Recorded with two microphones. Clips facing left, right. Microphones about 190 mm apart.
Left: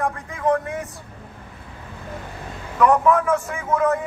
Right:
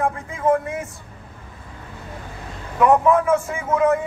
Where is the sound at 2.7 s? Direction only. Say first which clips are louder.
Right 1 dB; 20° right (ahead or behind).